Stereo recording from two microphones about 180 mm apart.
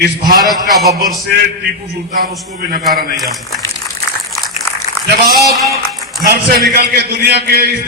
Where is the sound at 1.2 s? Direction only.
65° right (ahead or behind).